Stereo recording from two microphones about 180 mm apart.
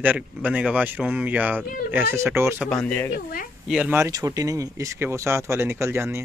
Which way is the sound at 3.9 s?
15° right (ahead or behind).